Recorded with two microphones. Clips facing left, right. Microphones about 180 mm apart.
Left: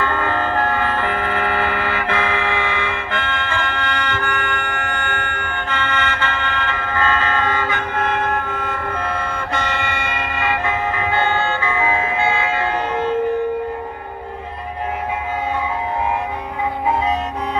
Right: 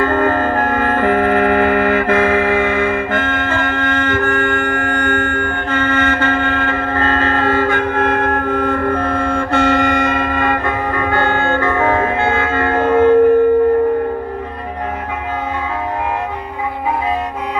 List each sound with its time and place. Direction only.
0.0 s music: 45° right (ahead or behind)